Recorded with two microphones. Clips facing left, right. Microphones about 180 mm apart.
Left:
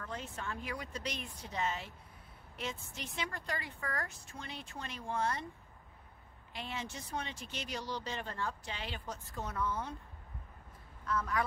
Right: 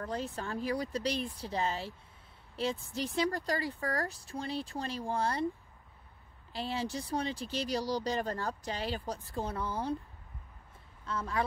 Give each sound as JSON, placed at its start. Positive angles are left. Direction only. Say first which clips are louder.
{"t": 0.0, "sound": "speech", "louder": "right 6 dB", "side_deg": -35}
{"t": 6.5, "sound": "speech", "louder": "right 7 dB", "side_deg": -35}
{"t": 11.1, "sound": "speech", "louder": "right 1 dB", "side_deg": -30}